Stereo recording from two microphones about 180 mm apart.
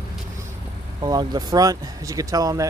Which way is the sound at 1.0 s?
20° right (ahead or behind).